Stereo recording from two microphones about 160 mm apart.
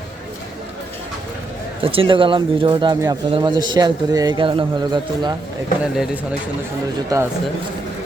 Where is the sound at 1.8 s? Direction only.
35° right (ahead or behind).